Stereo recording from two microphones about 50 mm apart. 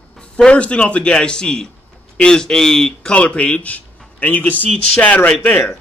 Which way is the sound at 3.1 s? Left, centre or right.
Left.